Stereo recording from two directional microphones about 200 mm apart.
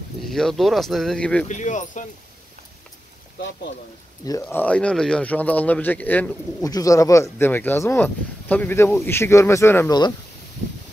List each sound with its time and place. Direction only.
0.3 s speech: centre (ahead or behind)
1.5 s speech: 40° left (ahead or behind)
4.2 s speech: 15° left (ahead or behind)